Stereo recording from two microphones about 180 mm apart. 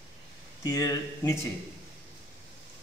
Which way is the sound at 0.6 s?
20° left (ahead or behind).